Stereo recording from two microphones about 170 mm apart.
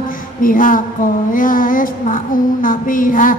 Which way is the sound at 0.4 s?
55° left (ahead or behind).